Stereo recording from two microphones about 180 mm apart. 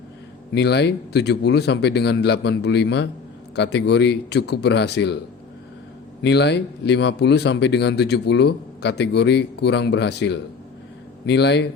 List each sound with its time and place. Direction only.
0.5 s speech: 70° left (ahead or behind)
6.2 s speech: 70° left (ahead or behind)